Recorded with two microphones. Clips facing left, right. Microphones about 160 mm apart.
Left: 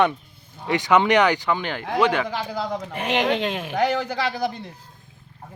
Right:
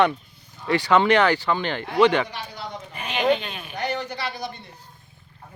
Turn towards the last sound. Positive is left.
turn(degrees=90)